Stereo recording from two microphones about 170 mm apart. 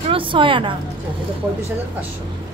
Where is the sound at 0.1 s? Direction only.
30° right (ahead or behind).